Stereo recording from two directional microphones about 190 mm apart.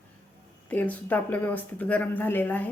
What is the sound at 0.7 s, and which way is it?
Speech, 10° left (ahead or behind).